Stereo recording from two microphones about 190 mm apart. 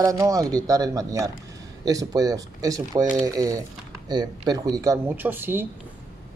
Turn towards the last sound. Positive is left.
turn(degrees=-10)  # may be behind; listen again after turning